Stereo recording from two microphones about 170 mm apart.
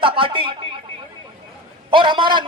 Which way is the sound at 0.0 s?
30° right (ahead or behind).